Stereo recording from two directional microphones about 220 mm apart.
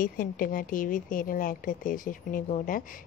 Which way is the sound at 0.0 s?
40° left (ahead or behind).